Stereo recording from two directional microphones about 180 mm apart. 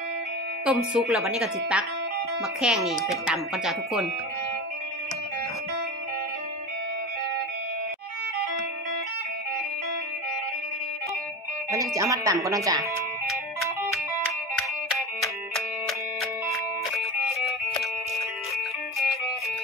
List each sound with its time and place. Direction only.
0.7 s speech: 5° right (ahead or behind)
11.7 s music: 20° right (ahead or behind)
12.4 s speech: 20° right (ahead or behind)
13.3 s music: centre (ahead or behind)
15.5 s music: centre (ahead or behind)